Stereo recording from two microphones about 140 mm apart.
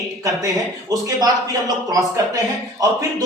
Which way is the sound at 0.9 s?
25° right (ahead or behind).